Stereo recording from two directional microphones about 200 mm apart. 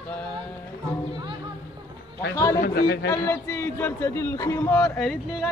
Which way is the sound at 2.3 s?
15° left (ahead or behind).